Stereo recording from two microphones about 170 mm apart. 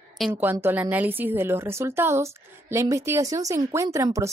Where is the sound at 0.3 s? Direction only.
10° right (ahead or behind).